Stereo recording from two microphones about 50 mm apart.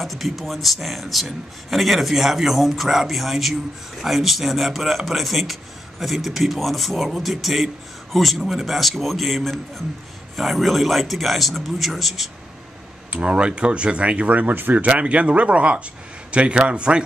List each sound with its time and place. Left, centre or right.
0.0 s speech: centre
13.1 s speech: right